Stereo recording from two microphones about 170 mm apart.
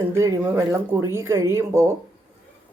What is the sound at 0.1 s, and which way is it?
Speech, 15° right (ahead or behind).